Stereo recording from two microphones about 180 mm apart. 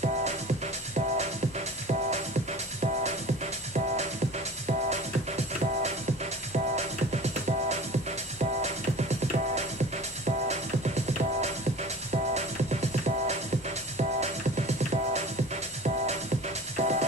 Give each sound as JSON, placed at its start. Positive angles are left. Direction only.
{"t": 0.9, "sound": "music", "side_deg": -40}
{"t": 6.5, "sound": "music", "side_deg": -40}
{"t": 12.1, "sound": "music", "side_deg": -40}
{"t": 16.7, "sound": "music", "side_deg": -40}